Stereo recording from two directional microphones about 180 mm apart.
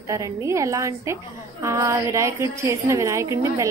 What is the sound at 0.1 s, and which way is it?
A woman's voice, 15° right (ahead or behind).